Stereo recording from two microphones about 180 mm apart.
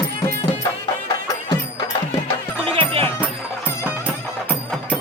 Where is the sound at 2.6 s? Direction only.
30° right (ahead or behind).